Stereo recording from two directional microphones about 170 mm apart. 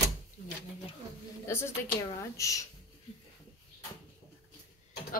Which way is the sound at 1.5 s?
15° left (ahead or behind).